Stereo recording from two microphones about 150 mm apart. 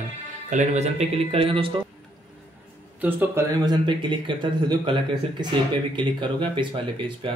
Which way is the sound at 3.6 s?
30° right (ahead or behind).